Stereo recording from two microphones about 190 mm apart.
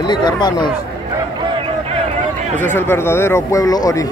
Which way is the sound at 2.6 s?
10° left (ahead or behind).